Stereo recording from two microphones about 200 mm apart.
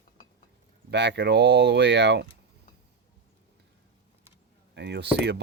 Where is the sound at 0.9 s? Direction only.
60° right (ahead or behind).